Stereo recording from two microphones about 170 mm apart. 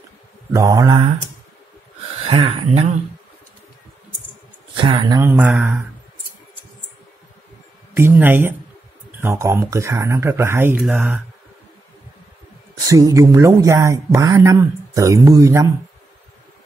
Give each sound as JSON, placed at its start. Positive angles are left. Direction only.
{"t": 0.5, "sound": "speech", "side_deg": -20}
{"t": 2.2, "sound": "speech", "side_deg": -35}
{"t": 4.7, "sound": "speech", "side_deg": -25}
{"t": 5.3, "sound": "speech", "side_deg": -10}
{"t": 7.9, "sound": "speech", "side_deg": -15}
{"t": 12.8, "sound": "speech", "side_deg": -20}